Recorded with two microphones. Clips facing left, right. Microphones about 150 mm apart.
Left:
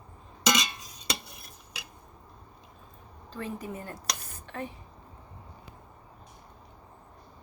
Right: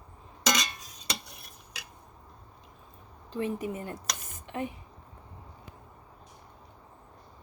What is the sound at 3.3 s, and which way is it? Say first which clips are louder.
A woman's voice: right 5 dB; 20° right (ahead or behind).